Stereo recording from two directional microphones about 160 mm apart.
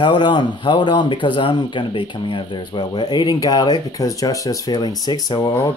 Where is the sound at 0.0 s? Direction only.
30° left (ahead or behind).